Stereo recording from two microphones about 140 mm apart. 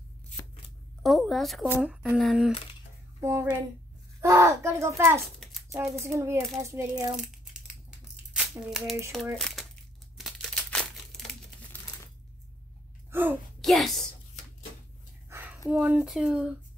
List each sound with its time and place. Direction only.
1.0 s speech: centre (ahead or behind)
3.2 s a child's voice: 20° right (ahead or behind)
8.5 s speech: 5° right (ahead or behind)
9.4 s crumpling: centre (ahead or behind)
13.1 s speech: 15° right (ahead or behind)
13.6 s a woman's voice: centre (ahead or behind)
15.2 s a sound: 20° right (ahead or behind)
15.8 s speech: 5° right (ahead or behind)